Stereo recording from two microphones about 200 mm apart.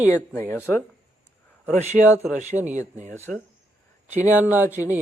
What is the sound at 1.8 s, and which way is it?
Speech, 35° right (ahead or behind).